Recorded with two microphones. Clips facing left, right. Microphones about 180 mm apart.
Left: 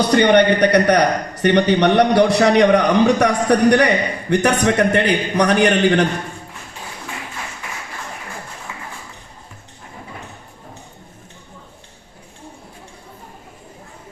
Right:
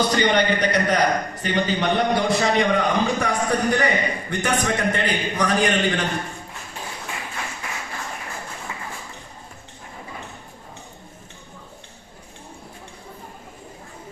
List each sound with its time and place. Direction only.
0.1 s a man's voice: 65° left (ahead or behind)